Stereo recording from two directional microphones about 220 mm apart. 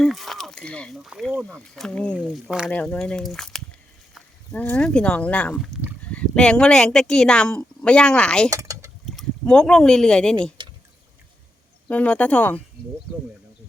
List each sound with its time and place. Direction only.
0.0 s speech: centre (ahead or behind)
8.4 s speech: 15° right (ahead or behind)
9.0 s speech: centre (ahead or behind)
10.6 s drip: 20° right (ahead or behind)
11.9 s speech: 5° left (ahead or behind)